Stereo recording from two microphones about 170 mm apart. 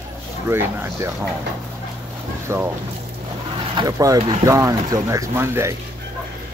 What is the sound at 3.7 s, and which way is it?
Speech, 20° right (ahead or behind).